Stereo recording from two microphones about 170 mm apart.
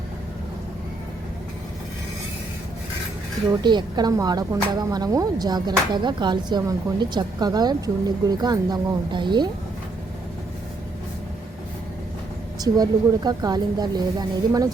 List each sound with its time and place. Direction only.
3.5 s speech: 25° right (ahead or behind)
12.5 s speech: 25° right (ahead or behind)